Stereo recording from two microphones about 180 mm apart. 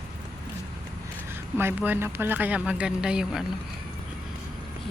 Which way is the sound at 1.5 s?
10° right (ahead or behind).